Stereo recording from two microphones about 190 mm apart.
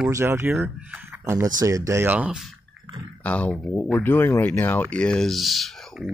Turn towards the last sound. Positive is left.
turn(degrees=0)  # may be behind; listen again after turning